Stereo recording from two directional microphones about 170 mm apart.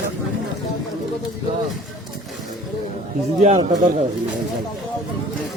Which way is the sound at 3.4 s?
35° right (ahead or behind).